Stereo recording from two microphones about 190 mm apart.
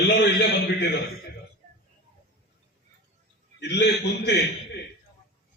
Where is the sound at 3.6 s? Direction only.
65° left (ahead or behind).